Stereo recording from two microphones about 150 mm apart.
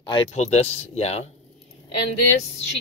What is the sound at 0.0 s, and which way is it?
Speech, 30° left (ahead or behind).